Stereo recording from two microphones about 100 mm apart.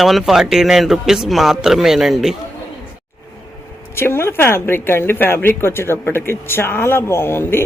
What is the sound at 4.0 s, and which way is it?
A woman's voice, 25° left (ahead or behind).